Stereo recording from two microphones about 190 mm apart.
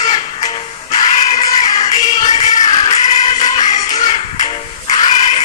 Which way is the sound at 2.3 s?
40° left (ahead or behind).